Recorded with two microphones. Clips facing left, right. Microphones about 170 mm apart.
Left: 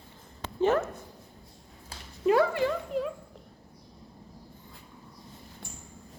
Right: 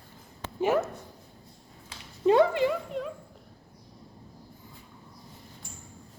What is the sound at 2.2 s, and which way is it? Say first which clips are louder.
Dog: right 2 dB; 25° right (ahead or behind).